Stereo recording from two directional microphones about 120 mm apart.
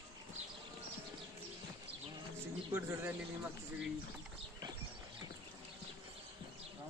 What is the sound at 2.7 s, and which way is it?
Speech, 20° right (ahead or behind).